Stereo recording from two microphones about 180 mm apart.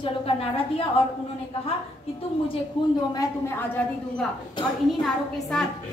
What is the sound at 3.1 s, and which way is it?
A woman's voice, 15° left (ahead or behind).